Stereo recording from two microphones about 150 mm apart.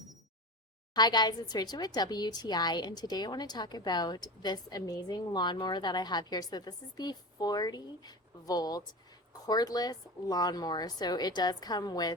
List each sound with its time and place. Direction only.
0.9 s a woman's voice: 30° left (ahead or behind)